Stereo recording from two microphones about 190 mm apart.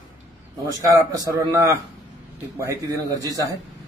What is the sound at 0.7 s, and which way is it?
A man's voice, 20° right (ahead or behind).